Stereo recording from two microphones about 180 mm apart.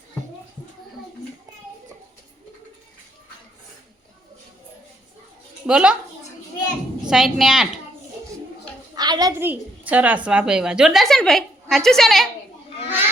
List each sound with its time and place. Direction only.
5.6 s a woman's voice: 5° right (ahead or behind)
7.1 s a woman's voice: centre (ahead or behind)
9.0 s a sound: 20° right (ahead or behind)
9.4 s a woman's voice: 10° right (ahead or behind)